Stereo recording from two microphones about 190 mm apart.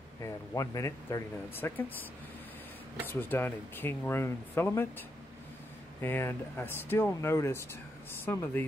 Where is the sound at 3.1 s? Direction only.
10° left (ahead or behind).